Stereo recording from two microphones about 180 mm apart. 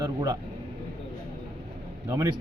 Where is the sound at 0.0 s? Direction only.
20° right (ahead or behind).